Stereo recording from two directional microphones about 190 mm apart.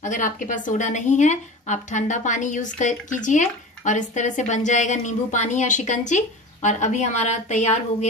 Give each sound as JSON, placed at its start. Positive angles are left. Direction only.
{"t": 0.0, "sound": "a woman's voice", "side_deg": 45}